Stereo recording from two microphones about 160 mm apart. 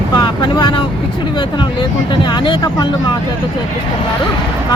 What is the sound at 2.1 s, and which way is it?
Speech, 30° left (ahead or behind).